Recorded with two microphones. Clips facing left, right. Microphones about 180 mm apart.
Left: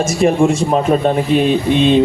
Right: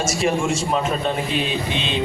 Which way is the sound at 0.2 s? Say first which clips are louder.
Left 10 dB; 55° left (ahead or behind).